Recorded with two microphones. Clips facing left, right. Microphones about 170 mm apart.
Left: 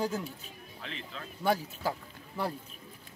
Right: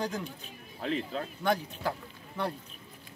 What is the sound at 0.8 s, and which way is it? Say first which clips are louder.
Speech: right 11 dB; 40° right (ahead or behind).